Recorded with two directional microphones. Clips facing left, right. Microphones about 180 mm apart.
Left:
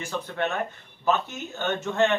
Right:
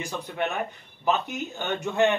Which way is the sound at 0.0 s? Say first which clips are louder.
Left 1 dB; 15° right (ahead or behind).